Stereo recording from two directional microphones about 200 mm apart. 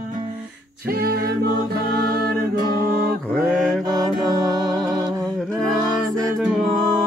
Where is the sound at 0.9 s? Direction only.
50° right (ahead or behind).